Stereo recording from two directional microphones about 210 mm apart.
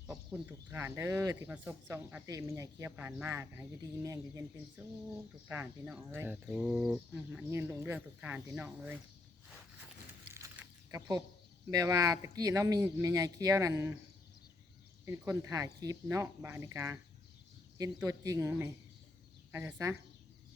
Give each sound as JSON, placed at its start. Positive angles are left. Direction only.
{"t": 0.3, "sound": "speech", "side_deg": -10}
{"t": 5.5, "sound": "speech", "side_deg": -10}
{"t": 11.7, "sound": "speech", "side_deg": -15}
{"t": 15.0, "sound": "speech", "side_deg": -15}